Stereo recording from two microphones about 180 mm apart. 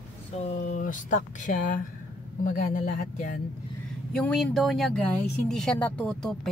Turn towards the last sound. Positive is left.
turn(degrees=5)  # may be behind; listen again after turning